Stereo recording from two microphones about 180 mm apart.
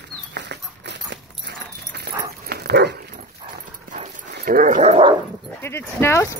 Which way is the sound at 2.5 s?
60° right (ahead or behind).